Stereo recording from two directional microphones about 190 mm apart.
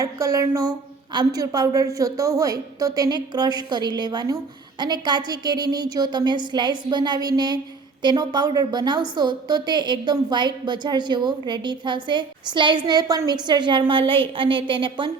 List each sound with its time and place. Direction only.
0.0 s a woman's voice: 15° right (ahead or behind)